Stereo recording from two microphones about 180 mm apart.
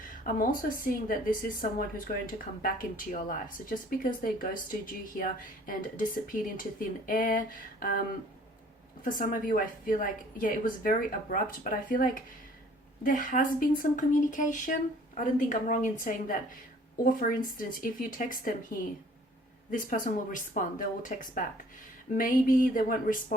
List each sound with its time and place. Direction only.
0.3 s speech: 50° left (ahead or behind)
9.0 s speech: 45° left (ahead or behind)